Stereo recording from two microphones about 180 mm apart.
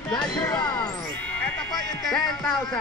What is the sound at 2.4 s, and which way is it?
Speech, centre (ahead or behind).